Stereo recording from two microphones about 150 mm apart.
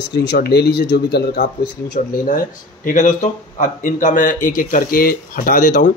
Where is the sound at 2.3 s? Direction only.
60° left (ahead or behind).